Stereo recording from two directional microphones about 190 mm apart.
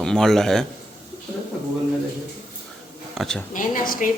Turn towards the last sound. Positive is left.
turn(degrees=45)  # may be behind; listen again after turning